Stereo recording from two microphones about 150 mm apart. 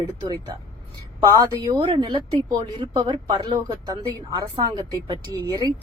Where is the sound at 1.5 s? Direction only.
25° right (ahead or behind).